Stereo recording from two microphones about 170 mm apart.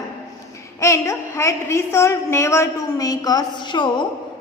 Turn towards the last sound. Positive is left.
turn(degrees=25)  # may be behind; listen again after turning